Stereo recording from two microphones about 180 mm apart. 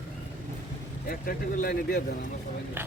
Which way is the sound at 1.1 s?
55° left (ahead or behind).